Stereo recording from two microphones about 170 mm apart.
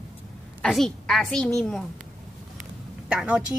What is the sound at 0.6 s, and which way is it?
A woman's voice, centre (ahead or behind).